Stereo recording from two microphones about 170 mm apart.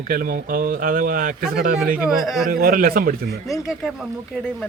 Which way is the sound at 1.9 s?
5° right (ahead or behind).